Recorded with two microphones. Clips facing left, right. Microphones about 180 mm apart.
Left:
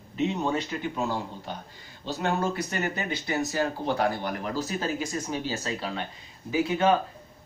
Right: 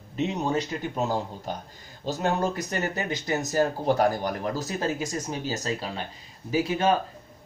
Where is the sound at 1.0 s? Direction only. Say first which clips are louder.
Right 5 dB; 40° right (ahead or behind).